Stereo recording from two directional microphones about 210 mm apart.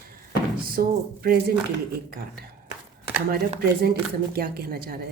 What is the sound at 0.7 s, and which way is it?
Speech, 45° right (ahead or behind).